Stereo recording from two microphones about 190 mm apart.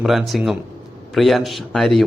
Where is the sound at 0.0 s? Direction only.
Centre (ahead or behind).